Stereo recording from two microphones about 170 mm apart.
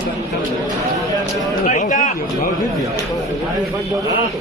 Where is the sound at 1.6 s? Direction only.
45° left (ahead or behind).